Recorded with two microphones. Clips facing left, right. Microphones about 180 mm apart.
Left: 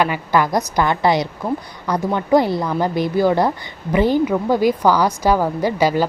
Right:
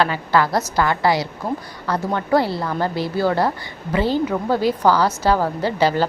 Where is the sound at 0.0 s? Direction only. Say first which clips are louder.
Left 1 dB; 15° left (ahead or behind).